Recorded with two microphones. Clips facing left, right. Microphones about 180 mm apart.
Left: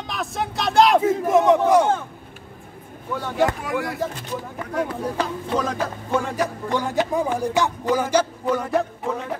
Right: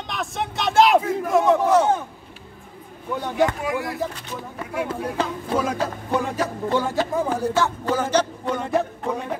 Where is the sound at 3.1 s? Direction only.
15° right (ahead or behind).